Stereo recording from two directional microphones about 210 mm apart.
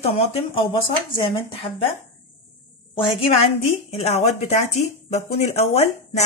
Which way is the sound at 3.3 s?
25° left (ahead or behind).